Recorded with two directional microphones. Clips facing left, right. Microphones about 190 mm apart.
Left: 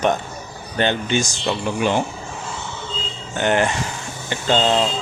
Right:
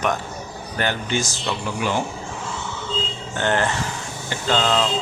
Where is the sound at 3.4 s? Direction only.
15° left (ahead or behind).